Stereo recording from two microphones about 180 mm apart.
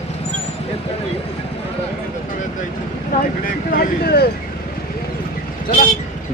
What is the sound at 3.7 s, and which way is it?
Vehicle, 60° left (ahead or behind).